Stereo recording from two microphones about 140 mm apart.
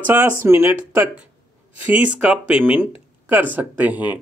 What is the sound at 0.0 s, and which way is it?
Speech, 15° right (ahead or behind).